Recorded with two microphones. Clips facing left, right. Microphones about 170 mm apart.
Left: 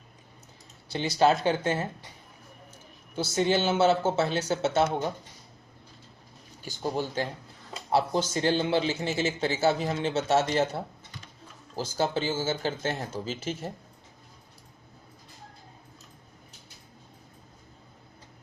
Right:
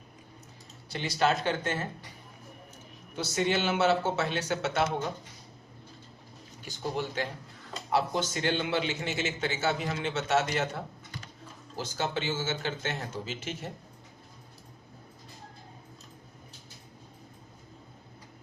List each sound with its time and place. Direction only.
0.9 s a man's voice: 35° left (ahead or behind)
3.2 s speech: 30° left (ahead or behind)
7.2 s a man's voice: 35° left (ahead or behind)
11.9 s a man's voice: 35° left (ahead or behind)